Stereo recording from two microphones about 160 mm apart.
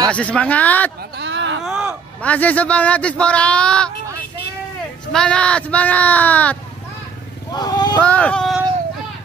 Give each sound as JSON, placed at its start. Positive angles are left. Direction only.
{"t": 0.1, "sound": "speech", "side_deg": 10}
{"t": 1.1, "sound": "a sound", "side_deg": -90}
{"t": 1.6, "sound": "music", "side_deg": -5}
{"t": 2.2, "sound": "speech", "side_deg": 10}
{"t": 5.1, "sound": "speech", "side_deg": 5}
{"t": 7.5, "sound": "vehicle", "side_deg": 25}
{"t": 8.0, "sound": "speech", "side_deg": 10}